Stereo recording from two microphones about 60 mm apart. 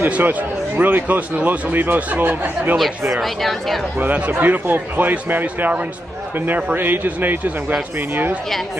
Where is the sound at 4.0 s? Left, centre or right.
Right.